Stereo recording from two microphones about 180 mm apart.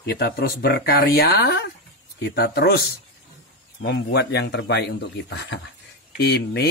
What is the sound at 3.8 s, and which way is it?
Speech, 60° left (ahead or behind).